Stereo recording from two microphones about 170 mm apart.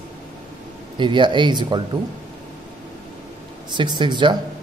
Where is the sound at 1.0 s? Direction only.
30° right (ahead or behind).